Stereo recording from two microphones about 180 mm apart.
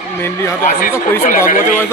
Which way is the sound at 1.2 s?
50° left (ahead or behind).